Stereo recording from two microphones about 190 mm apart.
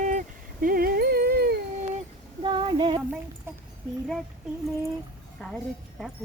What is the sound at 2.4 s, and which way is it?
Female singing, 25° right (ahead or behind).